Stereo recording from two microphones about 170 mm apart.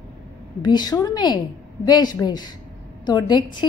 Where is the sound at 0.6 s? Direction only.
25° left (ahead or behind).